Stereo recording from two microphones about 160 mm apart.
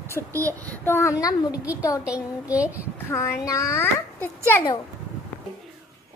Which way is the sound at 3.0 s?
15° left (ahead or behind).